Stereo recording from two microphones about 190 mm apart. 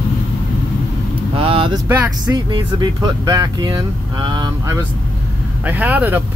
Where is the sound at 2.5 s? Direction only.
25° right (ahead or behind).